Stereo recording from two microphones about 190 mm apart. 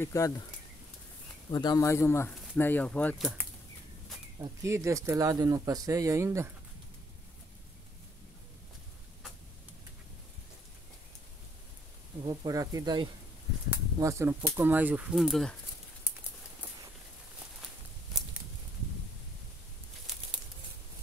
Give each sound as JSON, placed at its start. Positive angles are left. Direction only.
{"t": 0.0, "sound": "speech", "side_deg": 15}
{"t": 1.5, "sound": "speech", "side_deg": 20}
{"t": 4.4, "sound": "speech", "side_deg": -15}
{"t": 12.3, "sound": "speech", "side_deg": -20}